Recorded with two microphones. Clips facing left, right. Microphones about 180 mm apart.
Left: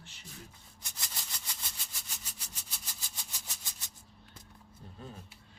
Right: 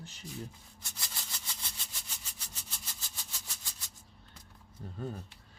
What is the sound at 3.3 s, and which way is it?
Maraca, 20° left (ahead or behind).